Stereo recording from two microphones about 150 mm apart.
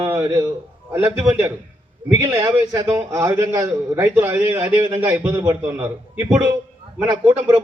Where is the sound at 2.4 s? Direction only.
20° right (ahead or behind).